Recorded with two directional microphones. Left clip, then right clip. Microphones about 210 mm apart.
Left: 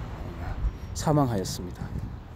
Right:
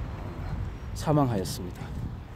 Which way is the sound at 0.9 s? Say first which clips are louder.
Left 1 dB; 15° left (ahead or behind).